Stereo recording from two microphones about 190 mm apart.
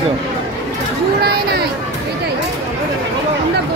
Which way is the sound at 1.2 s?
55° right (ahead or behind).